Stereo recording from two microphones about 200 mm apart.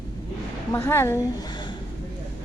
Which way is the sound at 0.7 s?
10° left (ahead or behind).